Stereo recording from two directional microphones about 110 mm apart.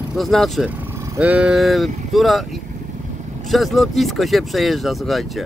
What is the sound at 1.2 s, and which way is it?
Speech, 10° right (ahead or behind).